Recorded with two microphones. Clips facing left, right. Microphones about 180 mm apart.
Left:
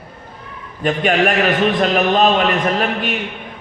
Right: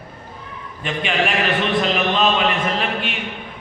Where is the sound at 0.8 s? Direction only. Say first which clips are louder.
Left 6 dB; 45° left (ahead or behind).